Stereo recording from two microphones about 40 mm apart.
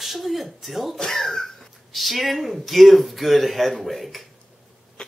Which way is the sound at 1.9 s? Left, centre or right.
Centre.